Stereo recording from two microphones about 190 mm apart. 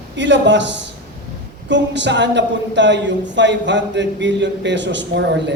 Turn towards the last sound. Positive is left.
turn(degrees=-65)  # may be behind; listen again after turning